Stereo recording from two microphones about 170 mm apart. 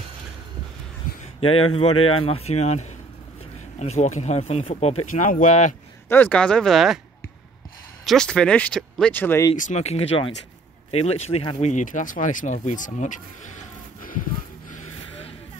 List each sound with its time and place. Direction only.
1.1 s a sound: 55° left (ahead or behind)
1.4 s speech: 35° left (ahead or behind)
6.0 s speech: 10° left (ahead or behind)
8.0 s speech: centre (ahead or behind)
9.6 s speech: 45° left (ahead or behind)